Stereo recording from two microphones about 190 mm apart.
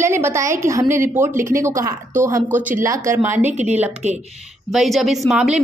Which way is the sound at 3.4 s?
35° right (ahead or behind).